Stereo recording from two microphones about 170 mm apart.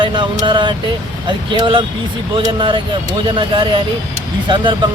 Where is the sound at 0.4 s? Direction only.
30° right (ahead or behind).